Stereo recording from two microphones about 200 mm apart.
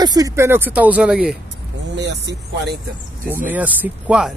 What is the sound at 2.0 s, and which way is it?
Speech, 60° right (ahead or behind).